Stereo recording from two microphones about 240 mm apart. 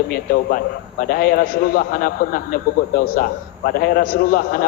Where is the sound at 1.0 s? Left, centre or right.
Left.